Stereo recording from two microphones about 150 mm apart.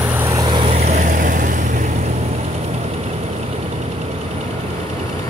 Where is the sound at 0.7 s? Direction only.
50° right (ahead or behind).